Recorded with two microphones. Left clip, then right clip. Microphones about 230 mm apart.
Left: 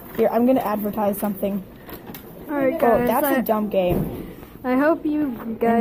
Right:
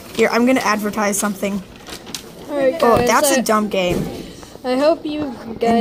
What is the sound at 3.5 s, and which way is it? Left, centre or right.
Speech, right.